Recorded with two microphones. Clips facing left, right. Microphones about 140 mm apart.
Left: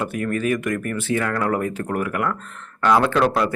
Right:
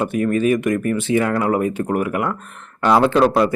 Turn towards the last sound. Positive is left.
turn(degrees=-20)  # may be behind; listen again after turning